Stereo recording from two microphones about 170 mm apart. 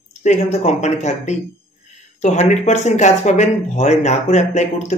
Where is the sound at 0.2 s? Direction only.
40° left (ahead or behind).